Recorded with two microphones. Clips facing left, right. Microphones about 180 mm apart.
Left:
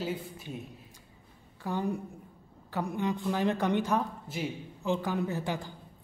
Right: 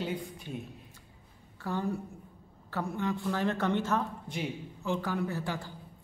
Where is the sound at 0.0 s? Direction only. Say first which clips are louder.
Even; centre (ahead or behind).